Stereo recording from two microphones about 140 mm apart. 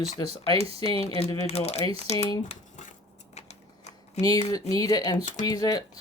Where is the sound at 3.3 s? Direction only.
55° left (ahead or behind).